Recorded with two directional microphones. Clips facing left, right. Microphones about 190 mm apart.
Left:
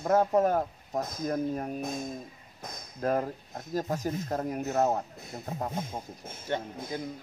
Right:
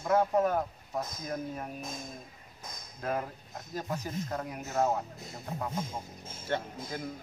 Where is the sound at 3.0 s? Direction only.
40° left (ahead or behind).